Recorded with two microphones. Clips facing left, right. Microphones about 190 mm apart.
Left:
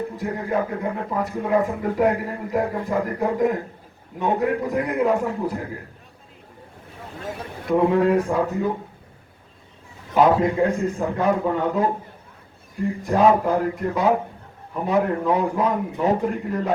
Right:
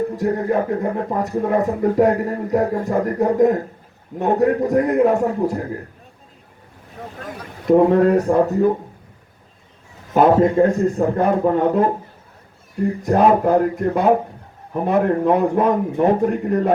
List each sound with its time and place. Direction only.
0.2 s a man's voice: 40° right (ahead or behind)
7.7 s a man's voice: 40° right (ahead or behind)
10.2 s a man's voice: 45° right (ahead or behind)
13.0 s a man's voice: 50° right (ahead or behind)
15.3 s a man's voice: 55° right (ahead or behind)